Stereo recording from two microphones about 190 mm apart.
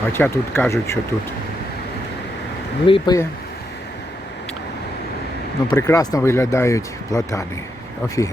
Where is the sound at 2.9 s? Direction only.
20° left (ahead or behind).